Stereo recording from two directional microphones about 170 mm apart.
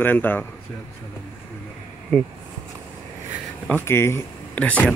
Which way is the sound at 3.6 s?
10° left (ahead or behind).